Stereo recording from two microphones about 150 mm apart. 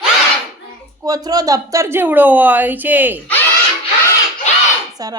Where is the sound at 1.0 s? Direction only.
25° right (ahead or behind).